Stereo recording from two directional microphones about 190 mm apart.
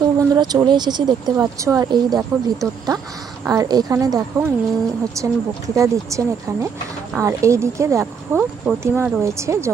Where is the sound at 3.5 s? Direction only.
20° right (ahead or behind).